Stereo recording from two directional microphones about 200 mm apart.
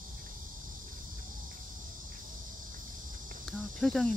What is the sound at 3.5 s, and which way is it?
Cricket, centre (ahead or behind).